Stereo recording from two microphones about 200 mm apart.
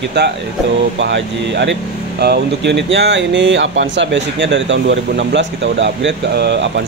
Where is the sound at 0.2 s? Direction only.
60° right (ahead or behind).